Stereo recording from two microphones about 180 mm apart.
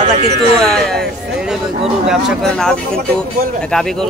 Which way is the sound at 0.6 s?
Centre (ahead or behind).